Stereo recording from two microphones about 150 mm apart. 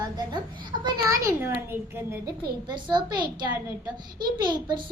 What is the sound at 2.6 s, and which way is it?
Speech, 30° right (ahead or behind).